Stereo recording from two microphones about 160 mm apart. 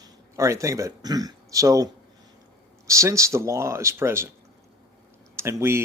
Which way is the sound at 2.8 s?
20° right (ahead or behind).